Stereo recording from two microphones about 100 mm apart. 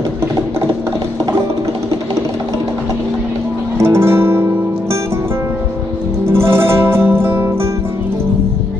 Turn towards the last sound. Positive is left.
turn(degrees=-25)  # may be behind; listen again after turning